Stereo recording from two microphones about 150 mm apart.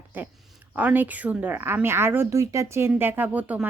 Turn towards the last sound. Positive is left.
turn(degrees=-10)  # may be behind; listen again after turning